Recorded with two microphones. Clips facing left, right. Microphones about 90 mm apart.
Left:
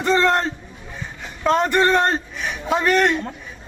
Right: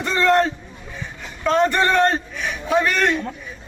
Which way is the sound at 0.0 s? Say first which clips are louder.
Left 1 dB; 30° left (ahead or behind).